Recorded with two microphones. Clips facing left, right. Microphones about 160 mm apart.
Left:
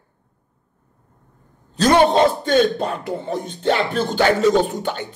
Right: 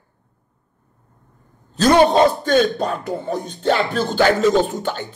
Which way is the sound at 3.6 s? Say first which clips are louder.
Right 1 dB; 15° left (ahead or behind).